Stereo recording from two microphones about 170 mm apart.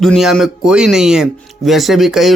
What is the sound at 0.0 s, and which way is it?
Speech, centre (ahead or behind).